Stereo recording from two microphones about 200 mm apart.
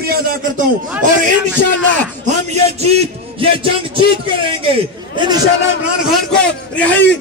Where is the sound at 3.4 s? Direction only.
25° right (ahead or behind).